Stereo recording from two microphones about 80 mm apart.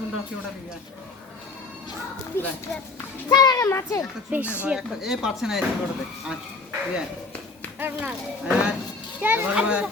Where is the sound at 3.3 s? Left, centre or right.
Left.